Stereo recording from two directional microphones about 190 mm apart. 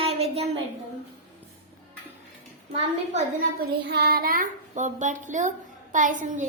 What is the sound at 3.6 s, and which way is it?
Child singing, 65° right (ahead or behind).